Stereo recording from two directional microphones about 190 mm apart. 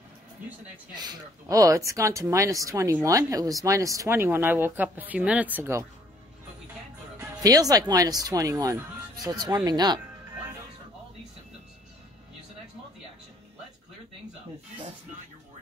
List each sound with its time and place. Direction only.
0.9 s speech: 20° right (ahead or behind)
7.2 s speech: 20° right (ahead or behind)